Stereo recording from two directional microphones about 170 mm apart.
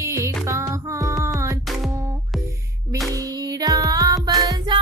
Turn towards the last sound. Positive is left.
turn(degrees=-25)  # may be behind; listen again after turning